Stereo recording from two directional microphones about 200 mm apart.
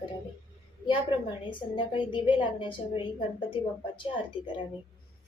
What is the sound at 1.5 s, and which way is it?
A woman's voice, 25° left (ahead or behind).